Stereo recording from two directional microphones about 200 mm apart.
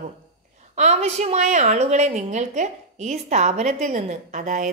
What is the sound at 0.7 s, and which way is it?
A woman's voice, 35° right (ahead or behind).